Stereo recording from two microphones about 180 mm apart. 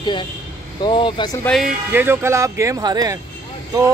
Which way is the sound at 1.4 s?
5° left (ahead or behind).